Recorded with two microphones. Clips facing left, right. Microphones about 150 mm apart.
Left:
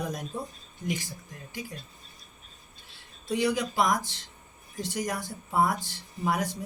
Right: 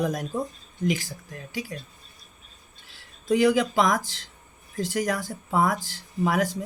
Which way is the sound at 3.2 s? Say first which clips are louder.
Right 7 dB; 90° right.